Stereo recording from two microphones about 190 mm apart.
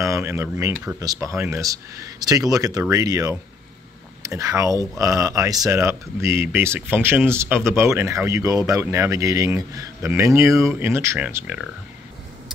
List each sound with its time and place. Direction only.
0.0 s speech: 15° right (ahead or behind)